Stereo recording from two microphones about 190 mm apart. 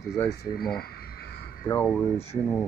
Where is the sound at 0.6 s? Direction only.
55° left (ahead or behind).